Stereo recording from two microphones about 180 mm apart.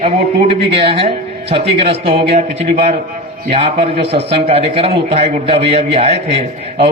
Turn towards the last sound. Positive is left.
turn(degrees=-35)  # may be behind; listen again after turning